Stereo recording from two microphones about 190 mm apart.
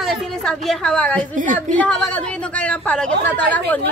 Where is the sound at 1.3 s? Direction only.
40° right (ahead or behind).